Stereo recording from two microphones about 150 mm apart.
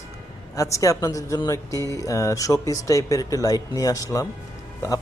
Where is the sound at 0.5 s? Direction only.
20° left (ahead or behind).